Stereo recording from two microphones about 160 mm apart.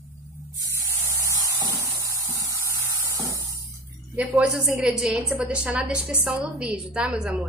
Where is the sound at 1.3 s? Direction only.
20° right (ahead or behind).